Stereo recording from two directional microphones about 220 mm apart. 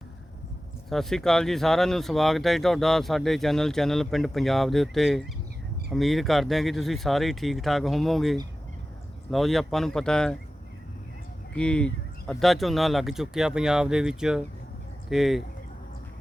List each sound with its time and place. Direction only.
0.9 s speech: centre (ahead or behind)
11.5 s speech: 5° left (ahead or behind)